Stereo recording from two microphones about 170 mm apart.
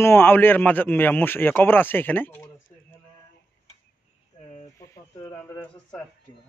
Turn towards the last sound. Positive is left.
turn(degrees=10)  # may be behind; listen again after turning